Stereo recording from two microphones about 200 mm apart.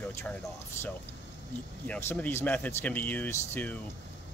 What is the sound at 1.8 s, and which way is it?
Speech, 5° left (ahead or behind).